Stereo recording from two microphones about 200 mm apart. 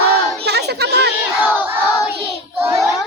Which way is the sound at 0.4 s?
55° right (ahead or behind).